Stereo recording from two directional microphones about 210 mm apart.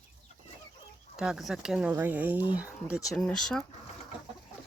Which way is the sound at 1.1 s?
5° right (ahead or behind).